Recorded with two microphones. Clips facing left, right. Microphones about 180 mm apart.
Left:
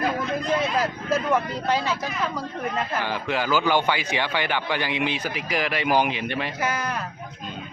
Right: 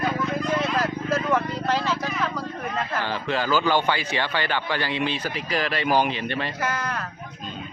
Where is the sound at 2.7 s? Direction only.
10° left (ahead or behind).